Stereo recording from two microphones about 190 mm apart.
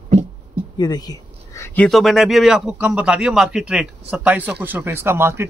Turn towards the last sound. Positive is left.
turn(degrees=-15)  # may be behind; listen again after turning